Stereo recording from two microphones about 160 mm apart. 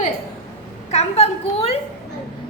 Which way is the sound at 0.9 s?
40° left (ahead or behind).